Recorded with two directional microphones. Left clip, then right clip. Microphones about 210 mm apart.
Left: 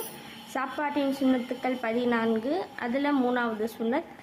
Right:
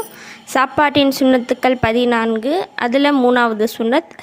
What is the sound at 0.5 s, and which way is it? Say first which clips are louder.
A woman's voice: right 16 dB; 40° right (ahead or behind).